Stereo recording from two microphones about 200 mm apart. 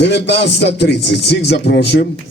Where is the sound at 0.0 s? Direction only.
60° left (ahead or behind).